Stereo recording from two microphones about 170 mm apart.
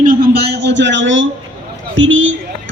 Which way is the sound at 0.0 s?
55° right (ahead or behind).